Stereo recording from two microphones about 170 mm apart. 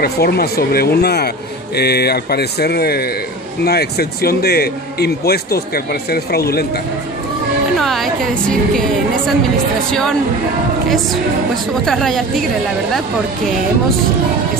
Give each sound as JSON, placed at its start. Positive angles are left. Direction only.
{"t": 0.0, "sound": "a man's voice", "side_deg": 65}
{"t": 7.8, "sound": "a woman's voice", "side_deg": 0}
{"t": 11.7, "sound": "a woman's voice", "side_deg": 0}